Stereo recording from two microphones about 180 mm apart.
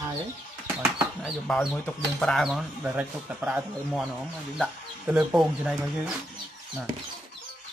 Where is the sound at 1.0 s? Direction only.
Centre (ahead or behind).